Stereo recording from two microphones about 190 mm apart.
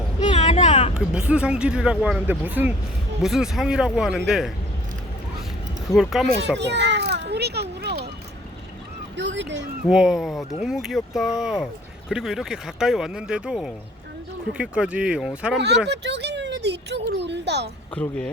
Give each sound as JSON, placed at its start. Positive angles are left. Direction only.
{"t": 0.3, "sound": "vehicle", "side_deg": 35}
{"t": 0.9, "sound": "speech", "side_deg": -5}
{"t": 5.9, "sound": "speech", "side_deg": 0}
{"t": 6.6, "sound": "children playing", "side_deg": -65}
{"t": 9.1, "sound": "speech", "side_deg": -70}
{"t": 9.9, "sound": "speech", "side_deg": -5}
{"t": 15.5, "sound": "speech", "side_deg": -60}
{"t": 15.9, "sound": "a sound", "side_deg": -65}
{"t": 17.9, "sound": "speech", "side_deg": 5}